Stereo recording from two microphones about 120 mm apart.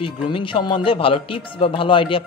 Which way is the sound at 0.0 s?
45° left (ahead or behind).